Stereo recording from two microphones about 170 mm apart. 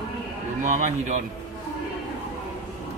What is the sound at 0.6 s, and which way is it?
Speech, 45° right (ahead or behind).